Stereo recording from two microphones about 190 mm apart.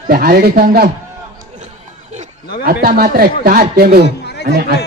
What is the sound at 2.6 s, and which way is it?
A man's voice, 55° right (ahead or behind).